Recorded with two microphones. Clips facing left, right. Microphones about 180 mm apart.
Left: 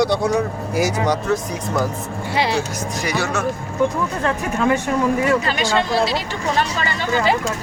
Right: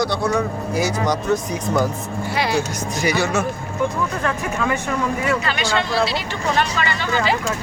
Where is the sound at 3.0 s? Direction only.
Centre (ahead or behind).